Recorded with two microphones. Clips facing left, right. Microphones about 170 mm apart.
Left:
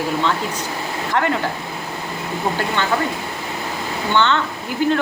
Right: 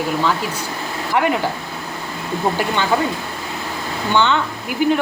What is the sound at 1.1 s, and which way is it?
Speech, 15° right (ahead or behind).